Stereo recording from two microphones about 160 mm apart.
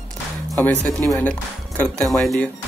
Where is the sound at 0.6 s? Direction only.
5° left (ahead or behind).